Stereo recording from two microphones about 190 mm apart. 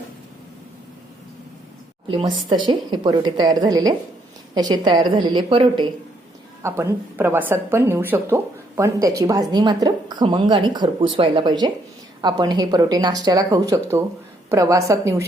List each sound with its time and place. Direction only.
2.0 s speech: 25° right (ahead or behind)
6.6 s a woman's voice: 15° right (ahead or behind)